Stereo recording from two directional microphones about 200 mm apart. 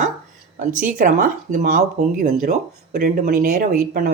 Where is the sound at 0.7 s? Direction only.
40° right (ahead or behind).